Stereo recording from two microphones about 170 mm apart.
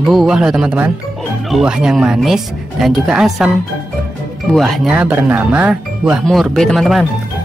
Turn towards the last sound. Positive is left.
turn(degrees=0)  # may be behind; listen again after turning